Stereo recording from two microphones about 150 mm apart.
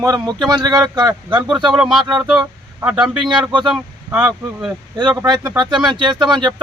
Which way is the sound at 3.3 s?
30° right (ahead or behind).